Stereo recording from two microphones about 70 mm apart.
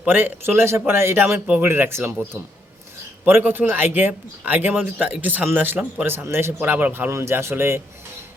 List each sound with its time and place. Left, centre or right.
0.0 s speech: right
3.2 s speech: right
6.6 s speech: right
7.1 s speech: right